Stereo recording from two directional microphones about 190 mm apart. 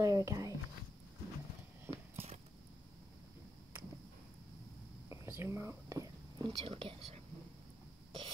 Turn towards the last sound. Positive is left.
turn(degrees=-30)  # may be behind; listen again after turning